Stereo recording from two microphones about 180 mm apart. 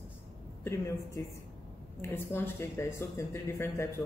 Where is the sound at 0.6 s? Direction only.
15° left (ahead or behind).